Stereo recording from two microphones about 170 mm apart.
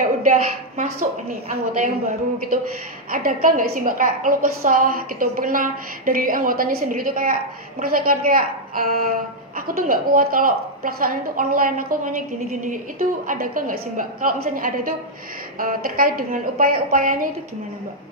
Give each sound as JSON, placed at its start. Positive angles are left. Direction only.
{"t": 0.2, "sound": "a woman's voice", "side_deg": -50}
{"t": 3.1, "sound": "a woman's voice", "side_deg": -55}